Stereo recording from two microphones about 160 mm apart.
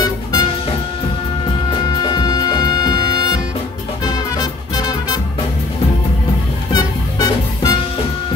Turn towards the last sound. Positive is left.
turn(degrees=25)  # may be behind; listen again after turning